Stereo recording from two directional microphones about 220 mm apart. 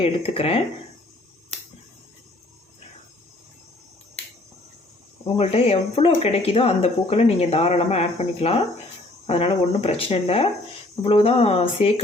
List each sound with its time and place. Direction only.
0.0 s speech: 25° left (ahead or behind)
5.2 s speech: 30° left (ahead or behind)